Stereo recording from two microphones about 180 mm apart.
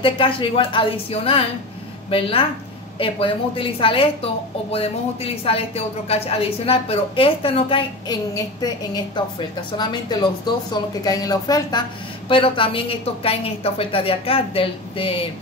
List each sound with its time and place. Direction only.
0.0 s a woman's voice: 30° left (ahead or behind)